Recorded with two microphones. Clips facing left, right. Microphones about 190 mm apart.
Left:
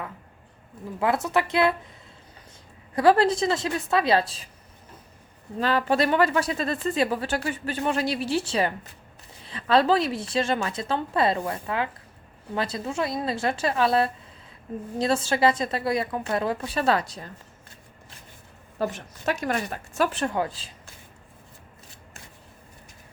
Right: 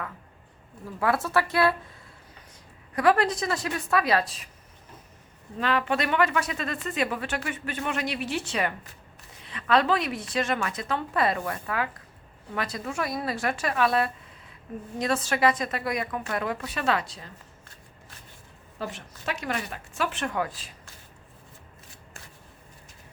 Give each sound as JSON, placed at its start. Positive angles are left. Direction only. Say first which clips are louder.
{"t": 0.9, "sound": "speech", "louder": "left 1 dB", "side_deg": 20}
{"t": 2.9, "sound": "speech", "louder": "left 3 dB", "side_deg": 30}
{"t": 5.5, "sound": "speech", "louder": "left 3 dB", "side_deg": 35}
{"t": 18.8, "sound": "speech", "louder": "left 7 dB", "side_deg": 45}